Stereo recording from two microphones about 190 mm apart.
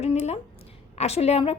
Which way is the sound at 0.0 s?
35° left (ahead or behind).